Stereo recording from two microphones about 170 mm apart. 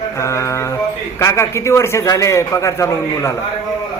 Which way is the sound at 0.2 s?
15° left (ahead or behind).